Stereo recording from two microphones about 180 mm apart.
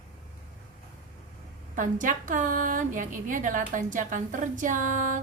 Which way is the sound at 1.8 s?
45° right (ahead or behind).